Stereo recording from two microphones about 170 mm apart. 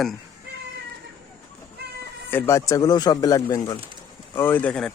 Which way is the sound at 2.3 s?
15° left (ahead or behind).